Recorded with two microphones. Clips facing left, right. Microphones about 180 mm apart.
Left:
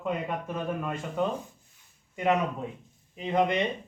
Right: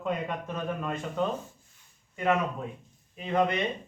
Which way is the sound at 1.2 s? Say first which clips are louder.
Left 1 dB; 10° left (ahead or behind).